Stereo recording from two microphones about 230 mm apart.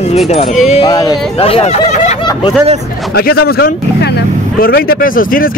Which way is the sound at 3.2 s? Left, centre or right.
Left.